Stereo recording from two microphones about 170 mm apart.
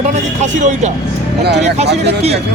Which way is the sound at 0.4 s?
45° right (ahead or behind).